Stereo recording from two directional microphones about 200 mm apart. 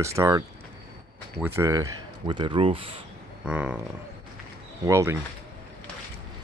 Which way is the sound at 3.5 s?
5° right (ahead or behind).